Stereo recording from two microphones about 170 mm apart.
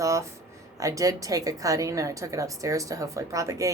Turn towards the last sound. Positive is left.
turn(degrees=-20)  # may be behind; listen again after turning